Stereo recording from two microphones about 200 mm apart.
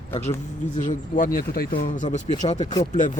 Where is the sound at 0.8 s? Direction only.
40° left (ahead or behind).